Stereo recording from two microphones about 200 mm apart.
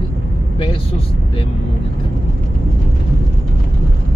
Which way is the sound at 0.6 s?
25° left (ahead or behind).